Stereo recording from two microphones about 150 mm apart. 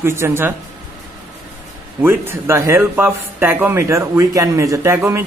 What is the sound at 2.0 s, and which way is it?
A man's voice, 15° right (ahead or behind).